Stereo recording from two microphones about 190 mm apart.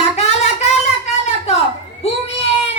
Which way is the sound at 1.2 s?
35° left (ahead or behind).